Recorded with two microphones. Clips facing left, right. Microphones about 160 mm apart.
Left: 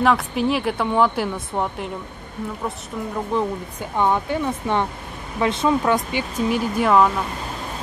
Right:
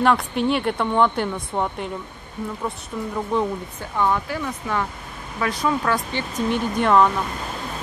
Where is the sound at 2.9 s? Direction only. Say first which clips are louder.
Even; centre (ahead or behind).